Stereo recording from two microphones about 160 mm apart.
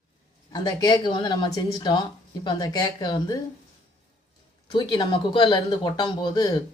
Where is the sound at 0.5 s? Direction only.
25° left (ahead or behind).